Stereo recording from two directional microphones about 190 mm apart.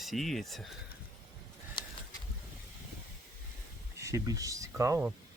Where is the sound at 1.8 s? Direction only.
25° left (ahead or behind).